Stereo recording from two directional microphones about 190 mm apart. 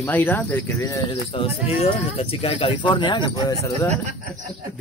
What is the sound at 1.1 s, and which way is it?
Speech, 30° left (ahead or behind).